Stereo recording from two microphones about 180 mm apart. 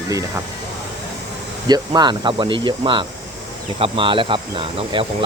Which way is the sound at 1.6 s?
20° right (ahead or behind).